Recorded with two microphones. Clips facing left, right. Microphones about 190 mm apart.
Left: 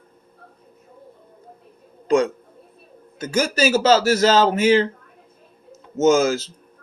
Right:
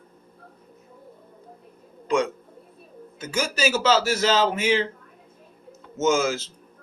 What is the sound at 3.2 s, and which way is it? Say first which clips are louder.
Speech: left 5 dB; 40° left (ahead or behind).